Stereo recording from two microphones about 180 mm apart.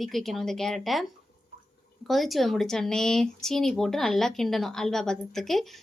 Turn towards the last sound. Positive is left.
turn(degrees=0)  # may be behind; listen again after turning